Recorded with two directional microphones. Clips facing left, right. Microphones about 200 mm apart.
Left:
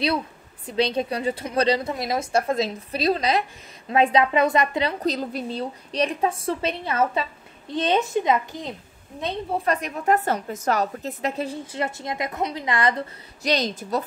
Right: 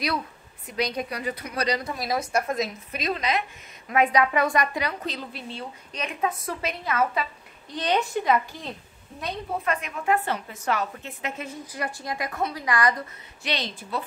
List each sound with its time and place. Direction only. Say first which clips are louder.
0.7 s a woman's voice: left 5 dB; 30° left (ahead or behind)
5.0 s a woman's voice: left 8 dB; 40° left (ahead or behind); by 9.8 s 25° left (ahead or behind)
9.8 s a woman's voice: left 3 dB; 40° left (ahead or behind)
13.5 s a woman's voice: left 7 dB; 40° left (ahead or behind)